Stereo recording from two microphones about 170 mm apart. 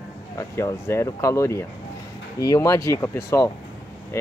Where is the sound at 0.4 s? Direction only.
15° left (ahead or behind).